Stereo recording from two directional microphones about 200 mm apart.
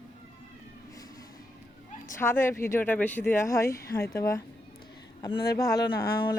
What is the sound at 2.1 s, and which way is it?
Speech, 10° left (ahead or behind).